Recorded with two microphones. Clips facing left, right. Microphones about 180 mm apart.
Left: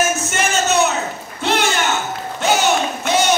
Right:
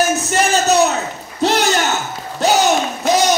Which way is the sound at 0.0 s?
35° right (ahead or behind).